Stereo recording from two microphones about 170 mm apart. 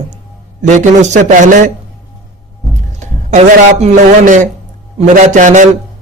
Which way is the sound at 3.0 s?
40° right (ahead or behind).